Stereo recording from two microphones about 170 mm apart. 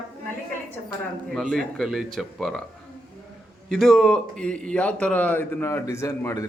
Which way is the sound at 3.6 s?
Centre (ahead or behind).